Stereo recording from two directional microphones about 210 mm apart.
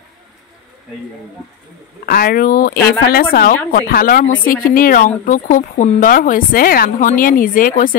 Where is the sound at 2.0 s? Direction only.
45° left (ahead or behind).